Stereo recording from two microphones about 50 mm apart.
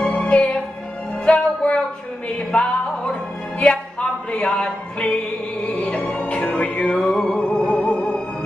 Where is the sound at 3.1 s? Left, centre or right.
Left.